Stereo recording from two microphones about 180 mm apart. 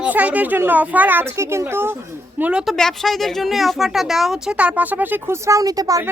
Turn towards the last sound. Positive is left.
turn(degrees=-20)  # may be behind; listen again after turning